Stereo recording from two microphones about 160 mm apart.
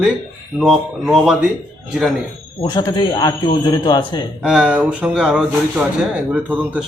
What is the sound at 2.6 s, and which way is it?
A man's voice, 30° left (ahead or behind).